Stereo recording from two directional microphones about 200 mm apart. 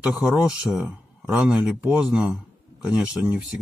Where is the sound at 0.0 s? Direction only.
5° right (ahead or behind).